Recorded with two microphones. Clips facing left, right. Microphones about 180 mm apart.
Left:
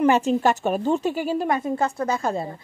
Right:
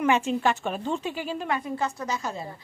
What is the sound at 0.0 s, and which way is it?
A woman's voice, 40° left (ahead or behind).